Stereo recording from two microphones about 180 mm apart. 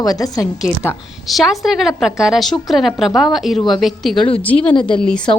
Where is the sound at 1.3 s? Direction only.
Centre (ahead or behind).